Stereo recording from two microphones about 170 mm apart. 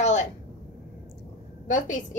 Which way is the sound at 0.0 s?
45° left (ahead or behind).